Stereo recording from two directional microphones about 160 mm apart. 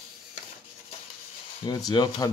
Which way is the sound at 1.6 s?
25° left (ahead or behind).